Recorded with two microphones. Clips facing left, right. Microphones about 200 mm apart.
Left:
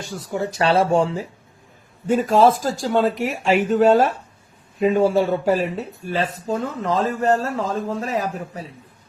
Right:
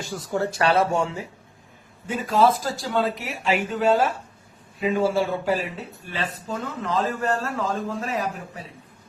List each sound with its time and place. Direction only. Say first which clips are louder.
0.3 s speech: left 2 dB; 15° left (ahead or behind); by 1.3 s 35° left (ahead or behind)
2.0 s speech: left 5 dB; 45° left (ahead or behind)